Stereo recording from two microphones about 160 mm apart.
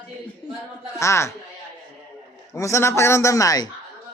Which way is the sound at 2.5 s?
20° left (ahead or behind).